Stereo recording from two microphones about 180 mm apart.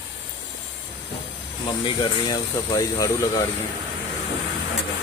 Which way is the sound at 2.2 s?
25° left (ahead or behind).